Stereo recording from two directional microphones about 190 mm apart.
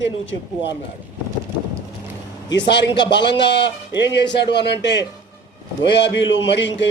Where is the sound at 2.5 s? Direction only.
65° left (ahead or behind).